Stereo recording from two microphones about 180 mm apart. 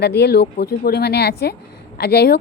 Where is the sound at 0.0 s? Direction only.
65° left (ahead or behind).